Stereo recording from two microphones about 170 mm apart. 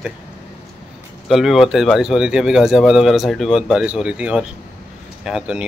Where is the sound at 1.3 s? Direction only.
Centre (ahead or behind).